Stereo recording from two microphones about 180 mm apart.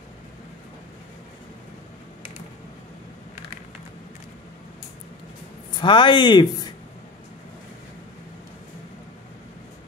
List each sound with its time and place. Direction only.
5.7 s speech: 25° left (ahead or behind)